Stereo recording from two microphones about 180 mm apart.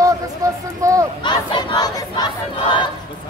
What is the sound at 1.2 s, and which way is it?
Crowd, 25° left (ahead or behind).